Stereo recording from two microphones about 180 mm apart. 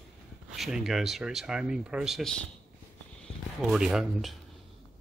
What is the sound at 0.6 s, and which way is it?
Speech, 5° right (ahead or behind).